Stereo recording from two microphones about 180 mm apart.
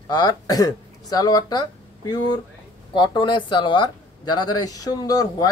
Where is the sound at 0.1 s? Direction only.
20° left (ahead or behind).